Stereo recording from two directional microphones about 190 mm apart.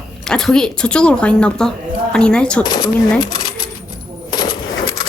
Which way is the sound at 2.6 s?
20° left (ahead or behind).